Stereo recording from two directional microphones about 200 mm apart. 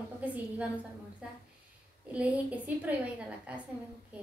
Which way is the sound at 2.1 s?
5° right (ahead or behind).